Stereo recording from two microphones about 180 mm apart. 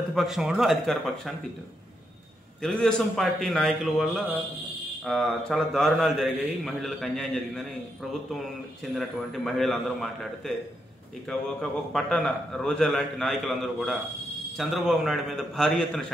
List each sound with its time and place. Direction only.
0.1 s a man's voice: centre (ahead or behind)
2.6 s a man's voice: centre (ahead or behind)
8.9 s a man's voice: centre (ahead or behind)